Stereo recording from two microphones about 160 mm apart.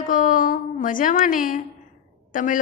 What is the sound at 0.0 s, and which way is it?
A woman's voice, 55° left (ahead or behind).